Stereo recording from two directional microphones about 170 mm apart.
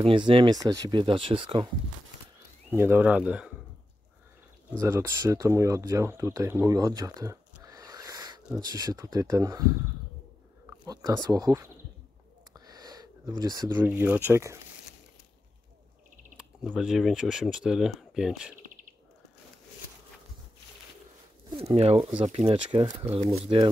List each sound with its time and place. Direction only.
0.0 s speech: 30° right (ahead or behind)
2.7 s speech: 10° right (ahead or behind)
4.7 s speech: 15° right (ahead or behind)
7.6 s wheeze: 20° right (ahead or behind)
8.5 s speech: 20° right (ahead or behind)
10.9 s speech: 20° right (ahead or behind)
16.3 s speech: centre (ahead or behind)
18.6 s a sound: 50° right (ahead or behind)
21.5 s speech: 40° right (ahead or behind)